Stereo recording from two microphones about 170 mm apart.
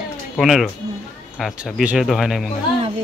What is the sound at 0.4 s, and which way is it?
Speech, centre (ahead or behind).